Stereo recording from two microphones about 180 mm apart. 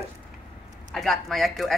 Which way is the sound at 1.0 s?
Centre (ahead or behind).